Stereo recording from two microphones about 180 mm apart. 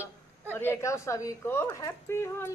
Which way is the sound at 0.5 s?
15° left (ahead or behind).